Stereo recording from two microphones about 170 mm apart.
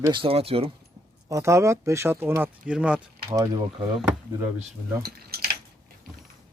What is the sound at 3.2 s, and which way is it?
Speech, 20° right (ahead or behind).